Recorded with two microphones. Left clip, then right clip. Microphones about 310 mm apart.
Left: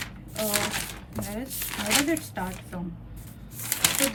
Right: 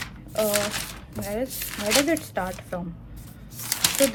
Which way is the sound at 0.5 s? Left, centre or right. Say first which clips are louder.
Right 2 dB; centre.